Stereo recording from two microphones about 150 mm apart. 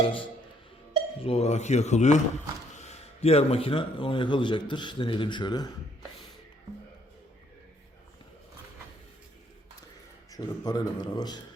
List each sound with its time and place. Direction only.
0.0 s a man's voice: 35° left (ahead or behind)
10.3 s speech: 25° left (ahead or behind)